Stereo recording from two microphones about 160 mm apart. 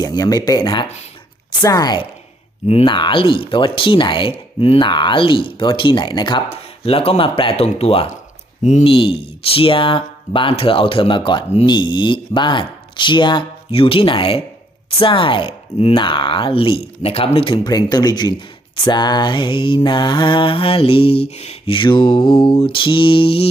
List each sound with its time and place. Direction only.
0.0 s speech: 25° left (ahead or behind)
2.6 s speech: 35° left (ahead or behind)